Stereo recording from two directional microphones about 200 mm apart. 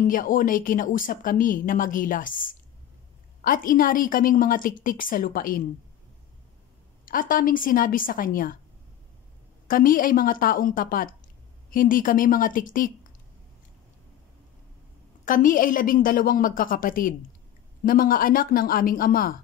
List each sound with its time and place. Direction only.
0.0 s a woman's voice: 45° left (ahead or behind)
7.1 s a woman's voice: 45° left (ahead or behind)
9.7 s a woman's voice: 45° left (ahead or behind)
15.2 s a woman's voice: 40° left (ahead or behind)